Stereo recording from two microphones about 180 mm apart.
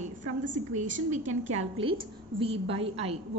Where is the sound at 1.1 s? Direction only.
35° right (ahead or behind).